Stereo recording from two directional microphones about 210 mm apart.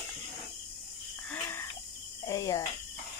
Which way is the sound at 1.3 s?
10° left (ahead or behind).